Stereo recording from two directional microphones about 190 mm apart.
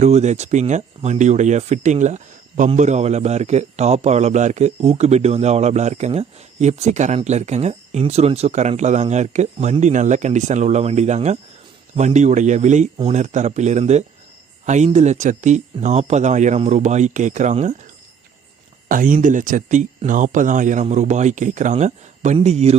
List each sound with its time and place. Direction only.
0.0 s speech: 35° right (ahead or behind)
18.9 s speech: 45° right (ahead or behind)